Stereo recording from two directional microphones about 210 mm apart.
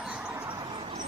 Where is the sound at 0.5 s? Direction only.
20° right (ahead or behind).